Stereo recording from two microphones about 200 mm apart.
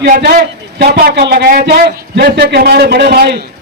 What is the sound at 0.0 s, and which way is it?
A man's voice, 50° right (ahead or behind).